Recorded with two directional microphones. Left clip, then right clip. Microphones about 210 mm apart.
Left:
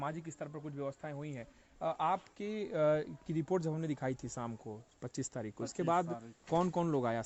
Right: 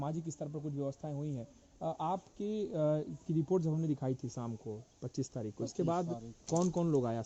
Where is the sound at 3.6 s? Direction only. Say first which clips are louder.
Right 1 dB; 70° left (ahead or behind).